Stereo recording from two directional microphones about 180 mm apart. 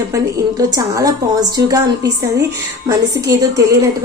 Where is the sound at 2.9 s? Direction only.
20° right (ahead or behind).